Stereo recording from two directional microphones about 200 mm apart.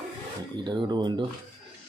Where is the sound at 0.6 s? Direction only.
20° right (ahead or behind).